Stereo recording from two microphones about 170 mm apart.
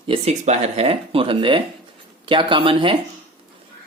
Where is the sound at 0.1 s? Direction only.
40° right (ahead or behind).